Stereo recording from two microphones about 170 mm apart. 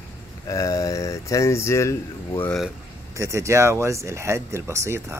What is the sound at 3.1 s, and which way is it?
Speech, 15° right (ahead or behind).